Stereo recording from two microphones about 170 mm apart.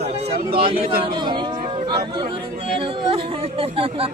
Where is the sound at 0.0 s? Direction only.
35° right (ahead or behind).